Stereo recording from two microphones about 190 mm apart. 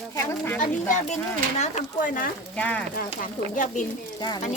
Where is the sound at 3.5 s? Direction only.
45° left (ahead or behind).